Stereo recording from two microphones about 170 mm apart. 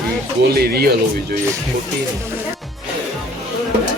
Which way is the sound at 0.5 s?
65° right (ahead or behind).